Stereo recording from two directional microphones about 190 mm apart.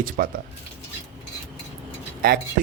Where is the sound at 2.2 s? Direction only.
50° right (ahead or behind).